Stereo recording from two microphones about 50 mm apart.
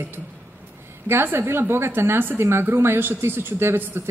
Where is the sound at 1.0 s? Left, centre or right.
Right.